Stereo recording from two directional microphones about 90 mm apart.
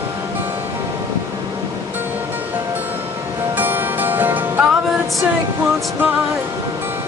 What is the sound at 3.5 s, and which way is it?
Music, 20° right (ahead or behind).